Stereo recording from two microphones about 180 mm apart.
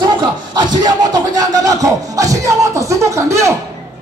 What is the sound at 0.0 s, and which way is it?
Speech, 25° right (ahead or behind).